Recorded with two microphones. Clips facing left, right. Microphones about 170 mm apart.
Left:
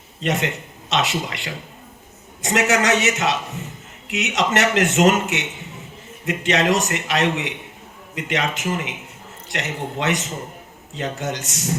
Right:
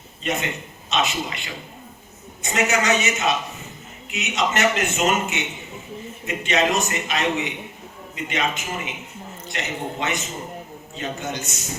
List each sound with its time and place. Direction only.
0.2 s a man's voice: 80° left